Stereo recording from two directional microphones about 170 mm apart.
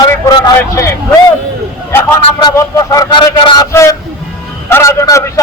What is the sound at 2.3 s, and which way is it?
A man's voice, 20° left (ahead or behind).